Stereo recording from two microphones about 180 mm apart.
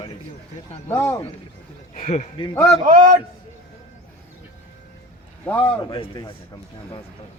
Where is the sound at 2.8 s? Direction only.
50° right (ahead or behind).